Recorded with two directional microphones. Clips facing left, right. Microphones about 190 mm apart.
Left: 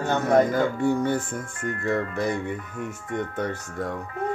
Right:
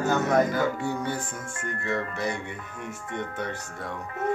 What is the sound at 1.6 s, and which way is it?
Speech, 50° left (ahead or behind).